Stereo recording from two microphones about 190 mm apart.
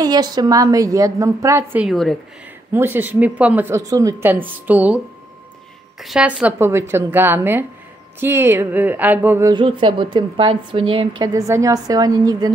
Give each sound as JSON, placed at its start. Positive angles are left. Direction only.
{"t": 0.0, "sound": "speech", "side_deg": -20}
{"t": 9.5, "sound": "a woman's voice", "side_deg": -25}
{"t": 11.3, "sound": "a woman's voice", "side_deg": -15}